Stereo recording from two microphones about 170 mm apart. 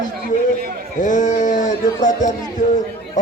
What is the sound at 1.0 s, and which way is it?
Speech, 45° left (ahead or behind).